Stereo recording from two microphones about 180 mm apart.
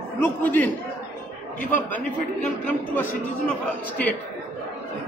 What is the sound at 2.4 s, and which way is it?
A man's voice, 10° left (ahead or behind).